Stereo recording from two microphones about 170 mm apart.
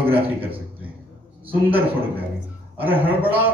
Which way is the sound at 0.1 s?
35° right (ahead or behind).